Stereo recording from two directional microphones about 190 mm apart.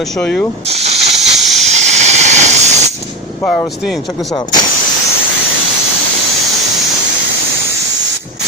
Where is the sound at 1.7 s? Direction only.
35° right (ahead or behind).